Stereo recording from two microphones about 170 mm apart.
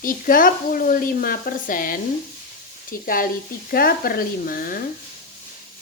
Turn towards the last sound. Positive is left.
turn(degrees=55)  # may be behind; listen again after turning